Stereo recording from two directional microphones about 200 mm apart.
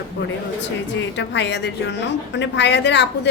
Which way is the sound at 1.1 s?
65° left (ahead or behind).